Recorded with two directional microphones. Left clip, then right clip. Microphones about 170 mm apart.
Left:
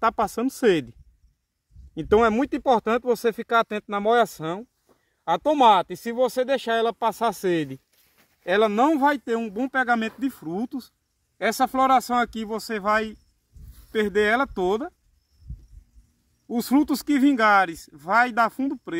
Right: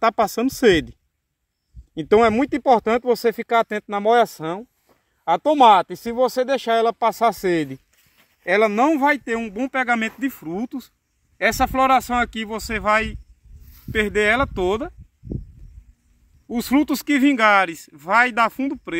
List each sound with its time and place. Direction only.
0.0 s speech: 30° right (ahead or behind)
2.0 s speech: 20° right (ahead or behind)
16.4 s speech: centre (ahead or behind)